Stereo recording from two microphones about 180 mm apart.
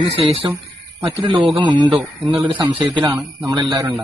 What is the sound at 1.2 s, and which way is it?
Speech, 25° right (ahead or behind).